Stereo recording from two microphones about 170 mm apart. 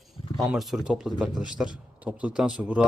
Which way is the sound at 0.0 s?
Centre (ahead or behind).